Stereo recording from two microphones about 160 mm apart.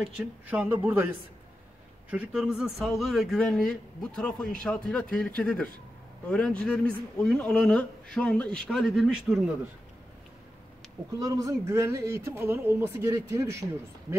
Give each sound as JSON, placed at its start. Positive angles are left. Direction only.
{"t": 0.0, "sound": "speech", "side_deg": -5}
{"t": 11.1, "sound": "speech", "side_deg": -20}